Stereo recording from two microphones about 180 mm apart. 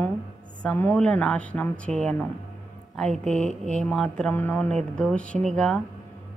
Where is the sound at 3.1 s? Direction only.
40° right (ahead or behind).